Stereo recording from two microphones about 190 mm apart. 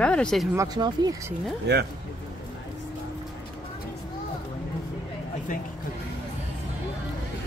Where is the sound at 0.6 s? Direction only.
20° right (ahead or behind).